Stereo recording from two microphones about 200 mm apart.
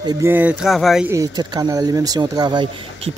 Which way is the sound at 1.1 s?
15° right (ahead or behind).